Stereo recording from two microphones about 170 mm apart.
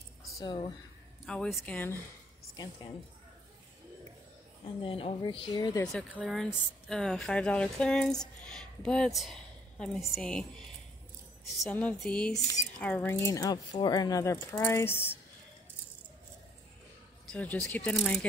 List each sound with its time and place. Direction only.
0.4 s speech: 25° left (ahead or behind)
1.2 s speech: 5° left (ahead or behind)
2.5 s speech: 25° left (ahead or behind)
4.8 s speech: 35° left (ahead or behind)
5.9 s speech: 5° left (ahead or behind)
11.7 s speech: 5° left (ahead or behind)
17.3 s speech: 5° left (ahead or behind)